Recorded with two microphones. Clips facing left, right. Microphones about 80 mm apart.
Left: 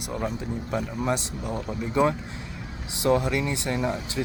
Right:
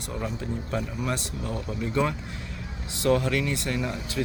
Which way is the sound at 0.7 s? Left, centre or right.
Centre.